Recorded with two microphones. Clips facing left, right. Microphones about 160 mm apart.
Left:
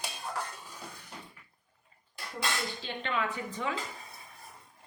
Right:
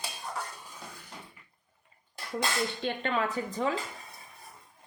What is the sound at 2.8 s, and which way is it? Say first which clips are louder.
Speech: right 3 dB; 45° right (ahead or behind).